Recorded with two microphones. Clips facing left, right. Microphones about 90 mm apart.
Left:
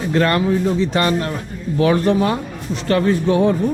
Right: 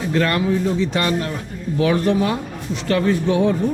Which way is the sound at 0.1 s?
40° left (ahead or behind).